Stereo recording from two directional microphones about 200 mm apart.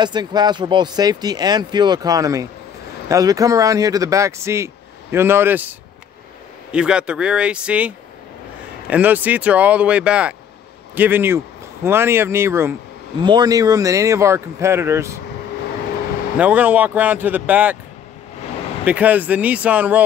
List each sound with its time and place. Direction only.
0.0 s speech: 20° right (ahead or behind)
6.7 s speech: 5° right (ahead or behind)
8.9 s speech: 10° right (ahead or behind)
16.3 s speech: 10° right (ahead or behind)
18.9 s speech: 10° right (ahead or behind)